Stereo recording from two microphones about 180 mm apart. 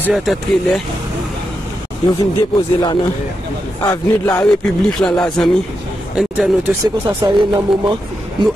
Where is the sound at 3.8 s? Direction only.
15° left (ahead or behind).